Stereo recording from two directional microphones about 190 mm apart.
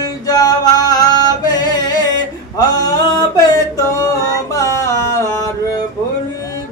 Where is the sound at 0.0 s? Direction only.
20° left (ahead or behind).